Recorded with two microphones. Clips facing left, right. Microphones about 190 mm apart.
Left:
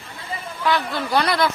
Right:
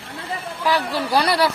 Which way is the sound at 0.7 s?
35° right (ahead or behind).